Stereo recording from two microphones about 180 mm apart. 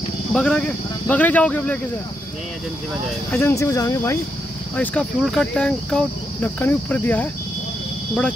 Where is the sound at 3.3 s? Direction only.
10° left (ahead or behind).